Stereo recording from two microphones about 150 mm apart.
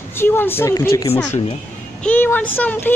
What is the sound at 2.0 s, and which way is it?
Speech, 10° left (ahead or behind).